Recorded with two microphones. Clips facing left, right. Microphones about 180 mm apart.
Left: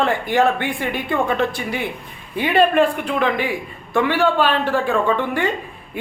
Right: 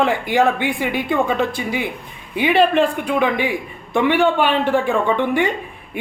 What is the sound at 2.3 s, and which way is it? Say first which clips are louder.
A man's voice: even; 10° right (ahead or behind).